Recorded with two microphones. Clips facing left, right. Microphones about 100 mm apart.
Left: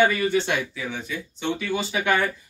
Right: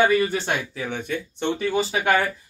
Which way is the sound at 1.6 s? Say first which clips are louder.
Right 3 dB; 35° right (ahead or behind).